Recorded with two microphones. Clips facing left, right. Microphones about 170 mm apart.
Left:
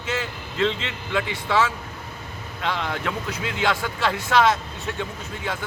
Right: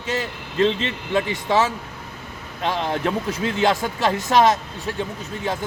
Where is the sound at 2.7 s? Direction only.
25° right (ahead or behind).